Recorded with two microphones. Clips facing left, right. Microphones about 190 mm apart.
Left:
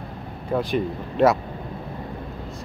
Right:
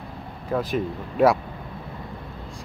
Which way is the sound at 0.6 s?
Centre (ahead or behind).